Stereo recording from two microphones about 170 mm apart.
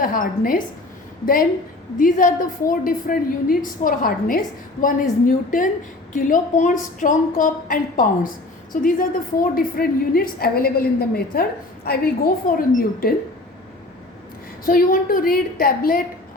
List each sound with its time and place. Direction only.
0.0 s a woman's voice: 55° left (ahead or behind)
14.6 s a woman's voice: 55° left (ahead or behind)